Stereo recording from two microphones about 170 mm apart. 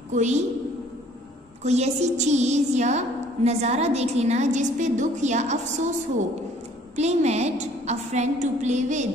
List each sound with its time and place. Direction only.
0.1 s a woman's voice: 45° right (ahead or behind)
1.6 s a woman's voice: 40° right (ahead or behind)
7.0 s a woman's voice: 40° right (ahead or behind)